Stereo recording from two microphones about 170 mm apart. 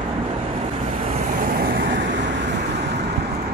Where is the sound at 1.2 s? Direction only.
55° right (ahead or behind); by 2.5 s 90° right.